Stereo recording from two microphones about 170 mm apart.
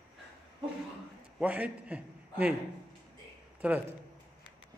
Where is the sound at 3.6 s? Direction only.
5° right (ahead or behind).